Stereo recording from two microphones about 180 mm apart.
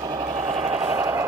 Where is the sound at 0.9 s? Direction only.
15° right (ahead or behind).